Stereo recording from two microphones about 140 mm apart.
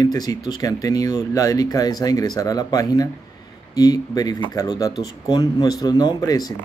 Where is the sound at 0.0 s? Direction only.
25° left (ahead or behind).